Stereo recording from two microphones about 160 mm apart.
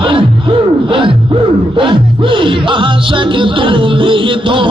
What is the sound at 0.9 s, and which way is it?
Music, 35° right (ahead or behind).